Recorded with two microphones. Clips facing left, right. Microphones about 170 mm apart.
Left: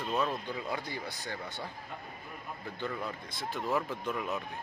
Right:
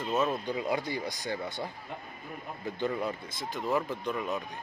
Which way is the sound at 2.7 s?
20° right (ahead or behind).